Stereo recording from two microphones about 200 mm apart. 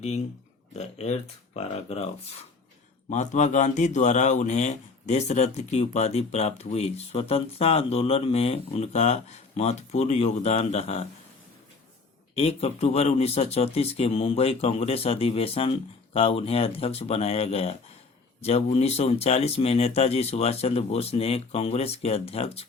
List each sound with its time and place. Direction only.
0.8 s speech: 35° left (ahead or behind)
12.3 s speech: 30° left (ahead or behind)